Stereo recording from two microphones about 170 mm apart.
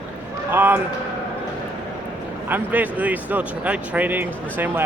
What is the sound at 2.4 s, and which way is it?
Speech, 10° right (ahead or behind).